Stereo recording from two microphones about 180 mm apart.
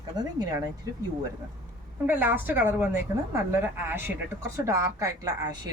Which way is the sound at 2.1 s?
10° right (ahead or behind).